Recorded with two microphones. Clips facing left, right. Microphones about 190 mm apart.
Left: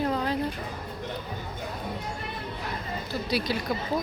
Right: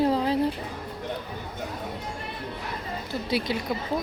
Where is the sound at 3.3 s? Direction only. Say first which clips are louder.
Right 1 dB; 25° right (ahead or behind).